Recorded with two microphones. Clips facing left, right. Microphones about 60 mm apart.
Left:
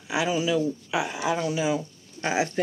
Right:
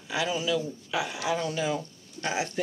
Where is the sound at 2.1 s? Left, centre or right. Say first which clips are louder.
Left 4 dB; left.